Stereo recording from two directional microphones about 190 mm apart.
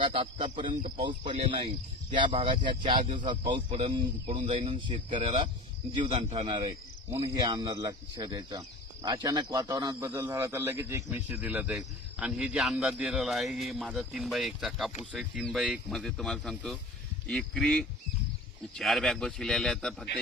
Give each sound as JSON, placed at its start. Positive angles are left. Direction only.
{"t": 0.0, "sound": "speech", "side_deg": -30}